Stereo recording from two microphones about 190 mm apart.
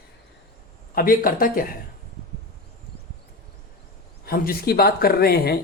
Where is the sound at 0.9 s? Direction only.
50° left (ahead or behind).